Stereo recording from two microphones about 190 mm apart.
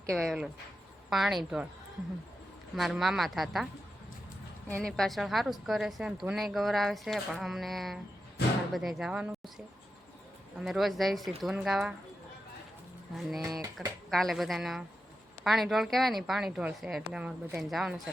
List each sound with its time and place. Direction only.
0.1 s a woman's voice: 5° left (ahead or behind)
2.7 s a woman's voice: centre (ahead or behind)
4.7 s a woman's voice: 5° left (ahead or behind)
10.6 s a woman's voice: centre (ahead or behind)
13.1 s a woman's voice: centre (ahead or behind)
13.4 s speech: 15° right (ahead or behind)
14.1 s a woman's voice: centre (ahead or behind)